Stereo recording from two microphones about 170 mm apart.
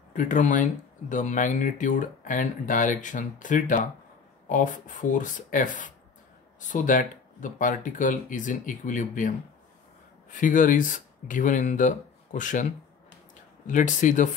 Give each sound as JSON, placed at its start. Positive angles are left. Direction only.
{"t": 0.1, "sound": "speech", "side_deg": 50}
{"t": 10.3, "sound": "speech", "side_deg": 50}
{"t": 13.7, "sound": "speech", "side_deg": 50}